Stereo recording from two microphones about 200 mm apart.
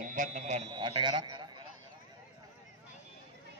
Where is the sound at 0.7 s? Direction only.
25° right (ahead or behind).